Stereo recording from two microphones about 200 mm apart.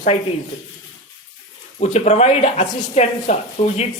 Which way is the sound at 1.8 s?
35° left (ahead or behind).